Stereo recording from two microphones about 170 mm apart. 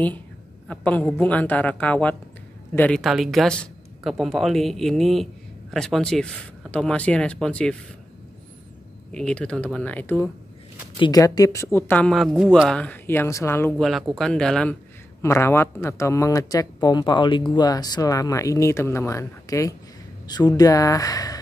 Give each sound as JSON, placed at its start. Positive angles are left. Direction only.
{"t": 0.7, "sound": "a woman's voice", "side_deg": 10}
{"t": 9.1, "sound": "a woman's voice", "side_deg": 5}
{"t": 11.0, "sound": "a woman's voice", "side_deg": 20}
{"t": 13.7, "sound": "speech", "side_deg": 0}
{"t": 15.2, "sound": "speech", "side_deg": 15}